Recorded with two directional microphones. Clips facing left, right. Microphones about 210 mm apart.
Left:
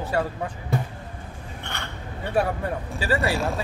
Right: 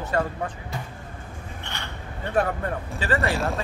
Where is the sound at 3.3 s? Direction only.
Centre (ahead or behind).